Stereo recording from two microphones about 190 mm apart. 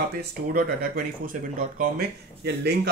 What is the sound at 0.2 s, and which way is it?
Speech, 50° right (ahead or behind).